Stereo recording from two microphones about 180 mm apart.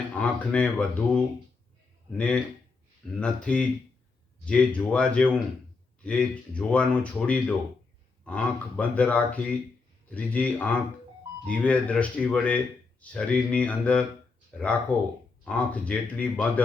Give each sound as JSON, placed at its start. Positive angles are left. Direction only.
{"t": 0.1, "sound": "speech", "side_deg": 5}